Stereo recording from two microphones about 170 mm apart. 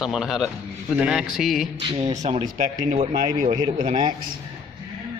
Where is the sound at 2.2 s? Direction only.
40° right (ahead or behind).